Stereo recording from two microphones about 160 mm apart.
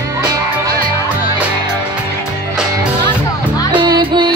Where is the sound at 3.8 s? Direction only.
25° right (ahead or behind).